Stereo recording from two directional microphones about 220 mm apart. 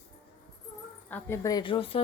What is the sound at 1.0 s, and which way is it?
Speech, 10° left (ahead or behind).